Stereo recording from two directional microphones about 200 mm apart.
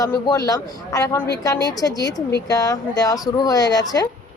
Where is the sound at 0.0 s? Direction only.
15° left (ahead or behind).